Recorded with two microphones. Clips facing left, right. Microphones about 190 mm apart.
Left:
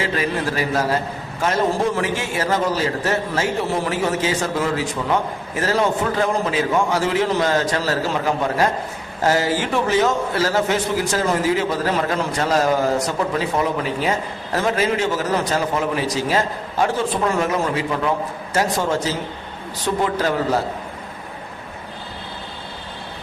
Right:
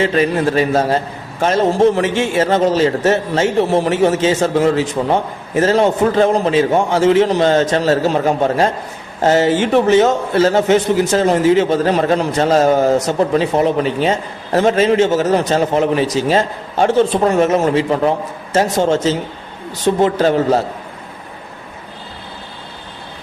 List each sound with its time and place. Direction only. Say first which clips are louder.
0.0 s a man's voice: right 7 dB; 25° right (ahead or behind)